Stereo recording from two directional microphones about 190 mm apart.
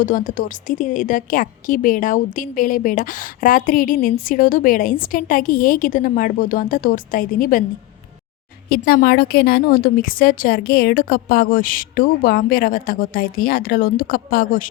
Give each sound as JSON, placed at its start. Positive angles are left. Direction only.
{"t": 0.0, "sound": "a woman's voice", "side_deg": 45}
{"t": 8.7, "sound": "a woman's voice", "side_deg": 50}